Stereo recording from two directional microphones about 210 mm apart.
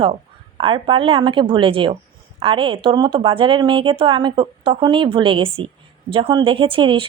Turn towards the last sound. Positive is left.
turn(degrees=-25)  # may be behind; listen again after turning